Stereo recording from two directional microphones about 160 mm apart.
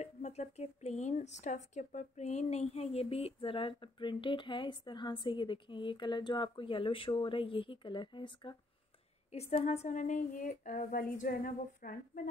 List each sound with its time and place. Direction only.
0.0 s speech: 45° left (ahead or behind); by 8.5 s 30° left (ahead or behind)
9.3 s speech: 40° left (ahead or behind); by 11.9 s 60° left (ahead or behind)